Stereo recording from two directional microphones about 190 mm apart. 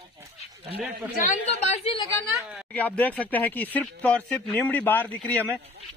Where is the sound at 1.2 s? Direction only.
40° left (ahead or behind).